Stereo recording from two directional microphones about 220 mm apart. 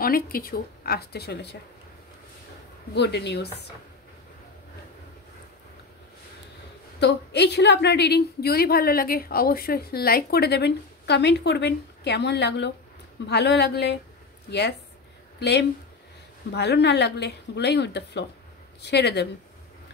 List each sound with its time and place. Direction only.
0.0 s a woman's voice: 40° left (ahead or behind)
2.9 s a woman's voice: 50° left (ahead or behind)
7.0 s a woman's voice: 50° left (ahead or behind)
15.3 s a woman's voice: 50° left (ahead or behind)